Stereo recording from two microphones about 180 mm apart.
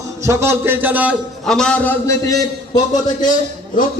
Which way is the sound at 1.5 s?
5° left (ahead or behind).